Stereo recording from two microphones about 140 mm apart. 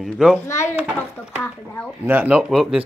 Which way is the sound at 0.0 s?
Centre (ahead or behind).